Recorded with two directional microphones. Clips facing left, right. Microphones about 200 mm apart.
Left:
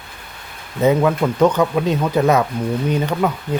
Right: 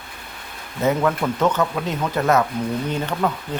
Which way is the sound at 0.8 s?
15° left (ahead or behind).